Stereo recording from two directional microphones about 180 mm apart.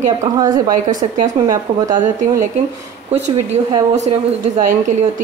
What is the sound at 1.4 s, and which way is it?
A woman's voice, 20° right (ahead or behind).